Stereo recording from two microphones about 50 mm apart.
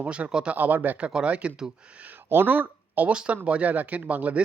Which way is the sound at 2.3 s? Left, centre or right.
Right.